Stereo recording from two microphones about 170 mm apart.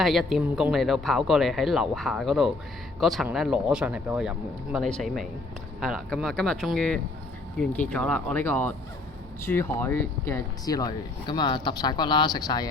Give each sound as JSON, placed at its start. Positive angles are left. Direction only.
{"t": 0.0, "sound": "speech", "side_deg": 0}